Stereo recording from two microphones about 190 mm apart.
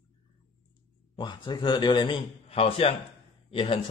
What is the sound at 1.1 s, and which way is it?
A man's voice, 25° left (ahead or behind).